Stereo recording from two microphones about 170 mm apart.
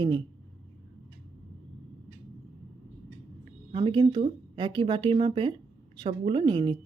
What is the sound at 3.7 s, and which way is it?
Speech, 30° right (ahead or behind).